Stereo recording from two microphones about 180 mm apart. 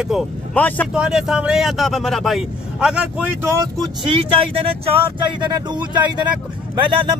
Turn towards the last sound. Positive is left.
turn(degrees=-25)  # may be behind; listen again after turning